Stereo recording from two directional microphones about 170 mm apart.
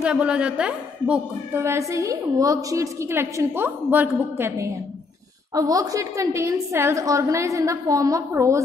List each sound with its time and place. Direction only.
0.0 s a woman's voice: 5° right (ahead or behind)